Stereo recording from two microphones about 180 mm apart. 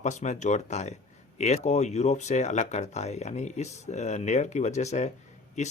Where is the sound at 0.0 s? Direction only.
40° left (ahead or behind).